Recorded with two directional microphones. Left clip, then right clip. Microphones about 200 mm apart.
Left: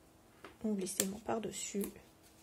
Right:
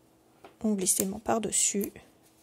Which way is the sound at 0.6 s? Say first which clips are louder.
Right 8 dB; 30° right (ahead or behind).